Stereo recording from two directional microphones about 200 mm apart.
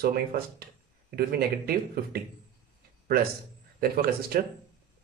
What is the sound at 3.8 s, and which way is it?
Speech, 50° right (ahead or behind).